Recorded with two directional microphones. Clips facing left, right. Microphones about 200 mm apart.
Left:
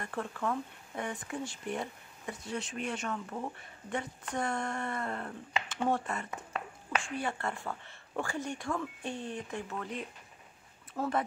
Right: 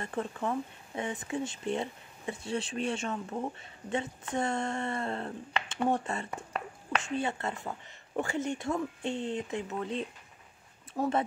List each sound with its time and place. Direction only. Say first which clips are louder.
0.0 s speech: right 2 dB; 20° right (ahead or behind)